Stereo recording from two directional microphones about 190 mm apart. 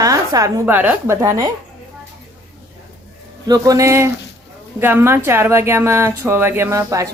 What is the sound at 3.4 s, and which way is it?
Speech, 20° right (ahead or behind).